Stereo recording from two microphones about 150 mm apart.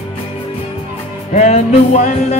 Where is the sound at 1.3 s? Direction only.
55° left (ahead or behind).